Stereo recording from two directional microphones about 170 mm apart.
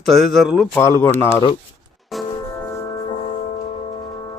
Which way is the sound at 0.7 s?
15° left (ahead or behind).